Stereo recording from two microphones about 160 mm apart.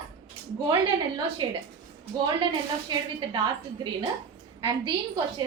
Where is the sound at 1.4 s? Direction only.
25° right (ahead or behind).